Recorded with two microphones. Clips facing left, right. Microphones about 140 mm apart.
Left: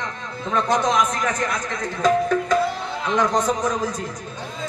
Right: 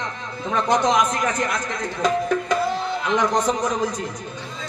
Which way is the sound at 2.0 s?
15° right (ahead or behind).